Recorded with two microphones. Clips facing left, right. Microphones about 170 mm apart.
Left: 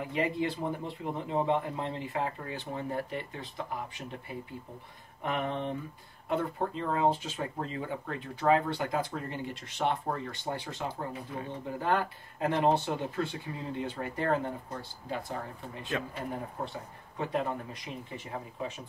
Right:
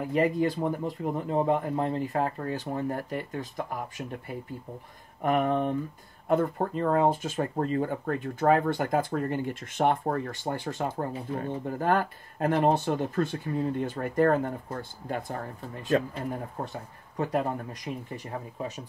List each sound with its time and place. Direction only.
0.1 s speech: 45° right (ahead or behind)
5.2 s speech: 45° right (ahead or behind)
15.9 s speech: 40° right (ahead or behind)
17.2 s speech: 45° right (ahead or behind)